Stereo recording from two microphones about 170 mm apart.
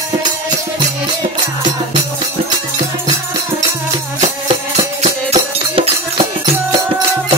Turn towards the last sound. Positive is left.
turn(degrees=-35)  # may be behind; listen again after turning